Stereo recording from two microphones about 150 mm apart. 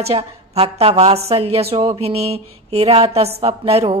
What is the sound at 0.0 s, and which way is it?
A woman's voice, 40° right (ahead or behind).